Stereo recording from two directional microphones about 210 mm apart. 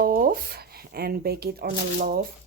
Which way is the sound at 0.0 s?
40° right (ahead or behind).